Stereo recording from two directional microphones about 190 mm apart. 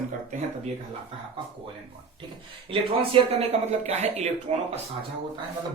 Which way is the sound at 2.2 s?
25° right (ahead or behind).